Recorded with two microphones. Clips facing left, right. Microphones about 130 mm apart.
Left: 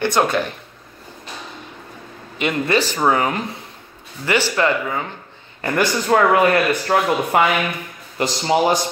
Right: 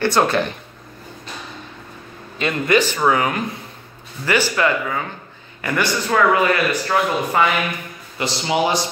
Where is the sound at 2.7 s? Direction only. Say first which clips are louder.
Right 2 dB; 35° left (ahead or behind).